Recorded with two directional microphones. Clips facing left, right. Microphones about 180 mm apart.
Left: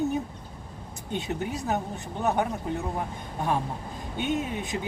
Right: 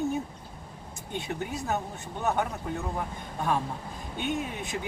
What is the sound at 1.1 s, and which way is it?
Speech, 20° left (ahead or behind).